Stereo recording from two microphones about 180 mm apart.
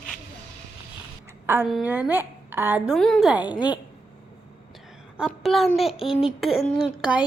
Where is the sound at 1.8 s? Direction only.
10° right (ahead or behind).